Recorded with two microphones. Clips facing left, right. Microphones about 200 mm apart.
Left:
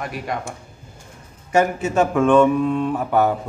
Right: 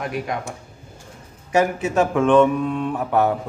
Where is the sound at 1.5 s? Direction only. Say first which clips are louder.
Left 1 dB; centre (ahead or behind).